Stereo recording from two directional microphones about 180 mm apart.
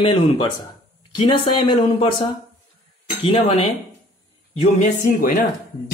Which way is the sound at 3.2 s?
35° left (ahead or behind).